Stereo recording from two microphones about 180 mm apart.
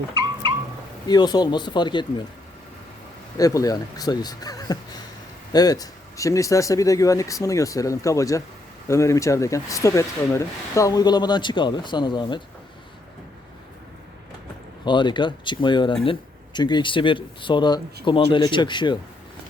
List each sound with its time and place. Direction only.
1.0 s speech: 20° left (ahead or behind)
3.3 s speech: 20° left (ahead or behind)
14.8 s speech: 25° left (ahead or behind)